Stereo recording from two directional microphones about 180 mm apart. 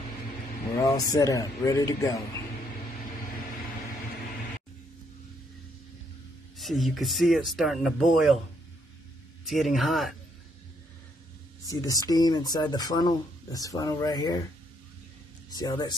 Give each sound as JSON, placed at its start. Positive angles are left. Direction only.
{"t": 0.8, "sound": "speech", "side_deg": 20}
{"t": 6.6, "sound": "speech", "side_deg": 0}
{"t": 9.4, "sound": "speech", "side_deg": 0}
{"t": 11.6, "sound": "speech", "side_deg": 20}
{"t": 15.5, "sound": "speech", "side_deg": 20}